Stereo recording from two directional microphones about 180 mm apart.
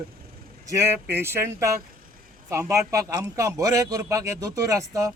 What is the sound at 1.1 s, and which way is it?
A man's voice, 15° right (ahead or behind).